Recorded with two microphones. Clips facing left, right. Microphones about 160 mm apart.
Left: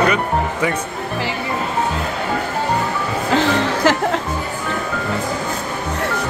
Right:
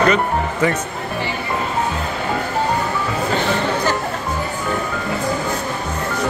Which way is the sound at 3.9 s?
90° left.